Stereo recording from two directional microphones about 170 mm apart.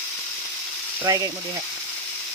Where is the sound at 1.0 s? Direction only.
20° right (ahead or behind).